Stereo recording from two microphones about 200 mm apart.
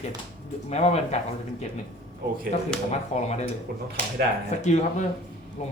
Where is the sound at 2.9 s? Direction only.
35° left (ahead or behind).